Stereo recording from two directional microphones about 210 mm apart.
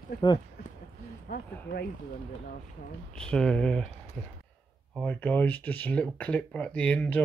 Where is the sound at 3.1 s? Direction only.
5° left (ahead or behind).